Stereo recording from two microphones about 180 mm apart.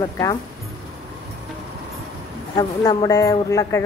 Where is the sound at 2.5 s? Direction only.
20° left (ahead or behind).